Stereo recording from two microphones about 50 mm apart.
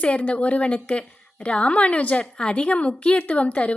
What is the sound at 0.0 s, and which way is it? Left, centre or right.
A woman's voice, left.